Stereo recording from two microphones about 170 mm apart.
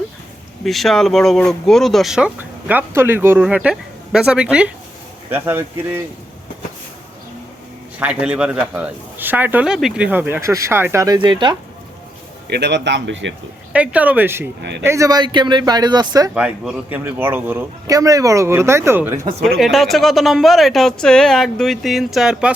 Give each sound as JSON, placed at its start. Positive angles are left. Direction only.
{"t": 0.6, "sound": "speech", "side_deg": 0}
{"t": 7.9, "sound": "speech", "side_deg": -10}
{"t": 12.5, "sound": "speech", "side_deg": -80}
{"t": 13.7, "sound": "speech", "side_deg": -10}
{"t": 14.6, "sound": "speech", "side_deg": -90}
{"t": 14.8, "sound": "speech", "side_deg": -20}
{"t": 16.3, "sound": "speech", "side_deg": -5}
{"t": 19.5, "sound": "speech", "side_deg": 0}